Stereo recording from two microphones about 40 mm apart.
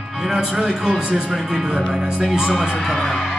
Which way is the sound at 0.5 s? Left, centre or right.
Centre.